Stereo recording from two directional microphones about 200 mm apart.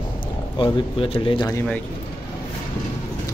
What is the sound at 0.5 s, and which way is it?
Speech, 25° left (ahead or behind).